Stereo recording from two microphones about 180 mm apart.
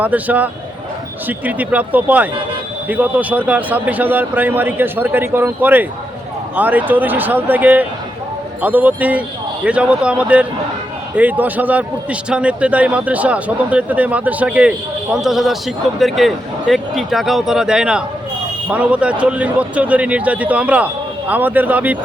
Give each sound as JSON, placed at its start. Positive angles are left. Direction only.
{"t": 0.0, "sound": "a man's voice", "side_deg": -10}